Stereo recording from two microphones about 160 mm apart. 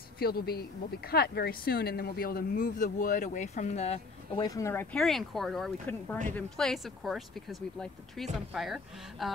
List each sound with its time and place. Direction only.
0.2 s speech: 75° left (ahead or behind); by 4.4 s 40° left (ahead or behind)
4.4 s speech: 20° left (ahead or behind)
4.9 s speech: centre (ahead or behind)